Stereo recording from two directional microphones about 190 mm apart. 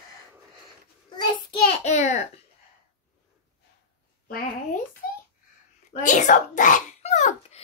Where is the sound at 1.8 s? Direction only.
40° left (ahead or behind).